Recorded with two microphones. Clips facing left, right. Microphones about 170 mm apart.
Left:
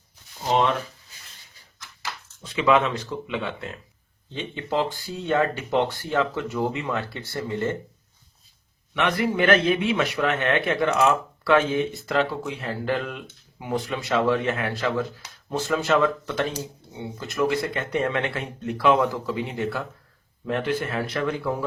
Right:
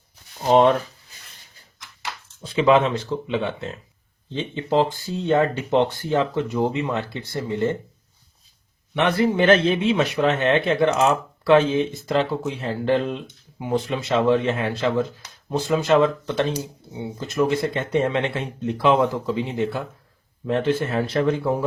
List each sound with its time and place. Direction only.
0.4 s speech: 40° right (ahead or behind)
2.4 s speech: 30° right (ahead or behind)
9.0 s speech: 30° right (ahead or behind)
16.5 s speech: 10° right (ahead or behind)
17.2 s speech: 25° right (ahead or behind)